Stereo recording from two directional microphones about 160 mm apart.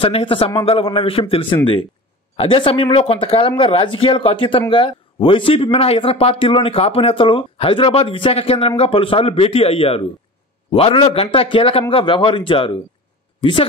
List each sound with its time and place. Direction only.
0.0 s speech: 35° left (ahead or behind)